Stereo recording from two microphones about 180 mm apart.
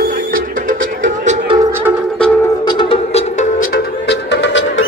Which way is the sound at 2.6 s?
30° left (ahead or behind).